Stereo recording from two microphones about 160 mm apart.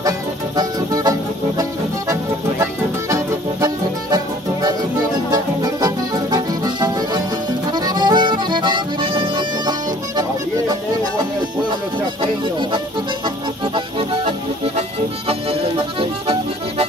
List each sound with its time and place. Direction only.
0.6 s music: 25° right (ahead or behind)
3.6 s music: 25° right (ahead or behind)
12.2 s music: 30° right (ahead or behind)